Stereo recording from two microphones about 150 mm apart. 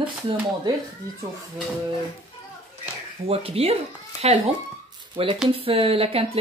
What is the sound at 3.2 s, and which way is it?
Speech, 40° right (ahead or behind).